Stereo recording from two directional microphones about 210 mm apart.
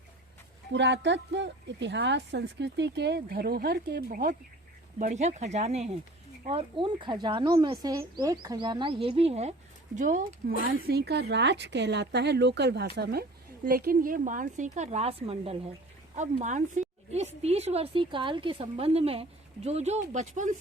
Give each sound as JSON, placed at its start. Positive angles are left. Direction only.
{"t": 0.7, "sound": "a woman's voice", "side_deg": -55}
{"t": 10.8, "sound": "a woman's voice", "side_deg": -50}